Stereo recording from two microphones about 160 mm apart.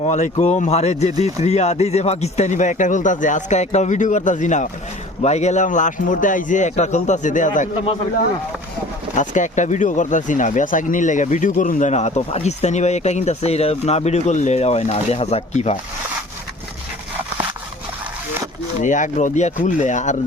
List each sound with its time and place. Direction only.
0.0 s speech: 45° left (ahead or behind)
9.1 s speech: 50° left (ahead or behind)
18.8 s speech: 50° left (ahead or behind)